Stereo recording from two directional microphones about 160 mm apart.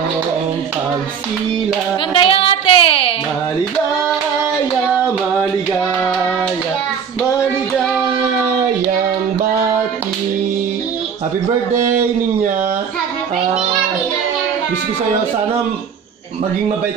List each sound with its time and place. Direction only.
2.1 s child singing: 35° left (ahead or behind)